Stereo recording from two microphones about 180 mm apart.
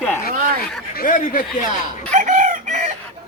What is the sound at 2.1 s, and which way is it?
Chicken, 45° right (ahead or behind).